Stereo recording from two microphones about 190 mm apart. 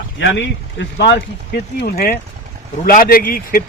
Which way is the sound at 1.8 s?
55° left (ahead or behind).